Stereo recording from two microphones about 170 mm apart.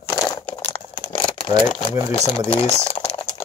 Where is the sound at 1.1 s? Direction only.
30° left (ahead or behind).